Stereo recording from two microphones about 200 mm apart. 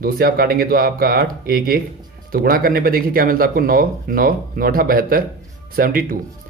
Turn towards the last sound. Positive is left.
turn(degrees=-45)  # may be behind; listen again after turning